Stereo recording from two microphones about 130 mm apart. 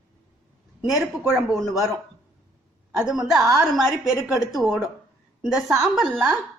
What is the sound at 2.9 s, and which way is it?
A woman's voice, 5° right (ahead or behind).